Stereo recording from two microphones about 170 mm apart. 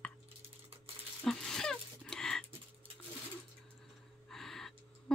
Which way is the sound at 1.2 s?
5° left (ahead or behind).